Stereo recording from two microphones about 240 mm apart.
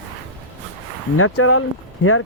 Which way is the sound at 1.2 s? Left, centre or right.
Left.